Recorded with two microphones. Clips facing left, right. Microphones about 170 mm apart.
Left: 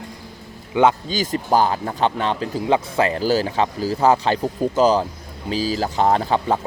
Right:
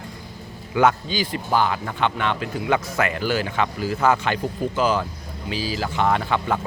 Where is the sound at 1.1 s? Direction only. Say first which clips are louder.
Left 4 dB; 45° left (ahead or behind).